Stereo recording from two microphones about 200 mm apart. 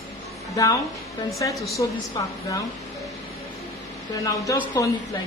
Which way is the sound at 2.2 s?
20° left (ahead or behind).